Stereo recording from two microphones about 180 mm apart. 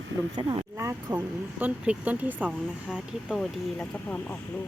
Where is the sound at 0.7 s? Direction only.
15° right (ahead or behind).